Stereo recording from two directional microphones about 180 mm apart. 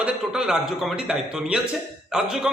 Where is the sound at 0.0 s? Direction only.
5° right (ahead or behind).